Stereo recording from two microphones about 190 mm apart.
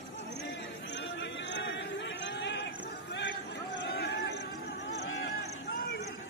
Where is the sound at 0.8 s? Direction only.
70° left (ahead or behind).